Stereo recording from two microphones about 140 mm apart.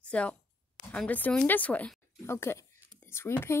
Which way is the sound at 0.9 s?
10° left (ahead or behind).